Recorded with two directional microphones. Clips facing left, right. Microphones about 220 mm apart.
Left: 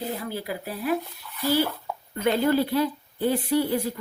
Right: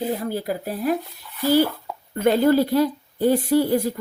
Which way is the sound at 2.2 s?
45° right (ahead or behind).